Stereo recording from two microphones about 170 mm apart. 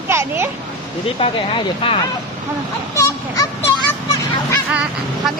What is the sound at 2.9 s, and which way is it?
A child's voice, 20° left (ahead or behind).